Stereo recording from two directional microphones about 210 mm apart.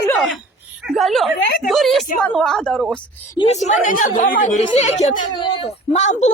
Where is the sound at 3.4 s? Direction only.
30° left (ahead or behind).